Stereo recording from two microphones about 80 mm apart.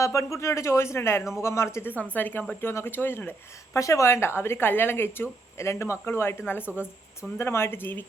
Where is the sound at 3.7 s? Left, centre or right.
Left.